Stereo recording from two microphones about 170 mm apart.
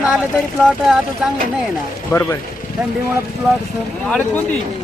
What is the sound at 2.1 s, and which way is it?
Speech, 15° left (ahead or behind).